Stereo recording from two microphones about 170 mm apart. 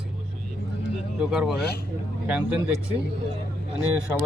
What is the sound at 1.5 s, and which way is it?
Speech, 70° left (ahead or behind).